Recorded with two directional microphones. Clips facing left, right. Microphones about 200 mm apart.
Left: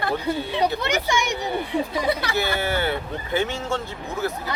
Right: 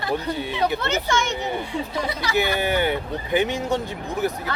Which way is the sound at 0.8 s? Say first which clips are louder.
Even; 15° left (ahead or behind).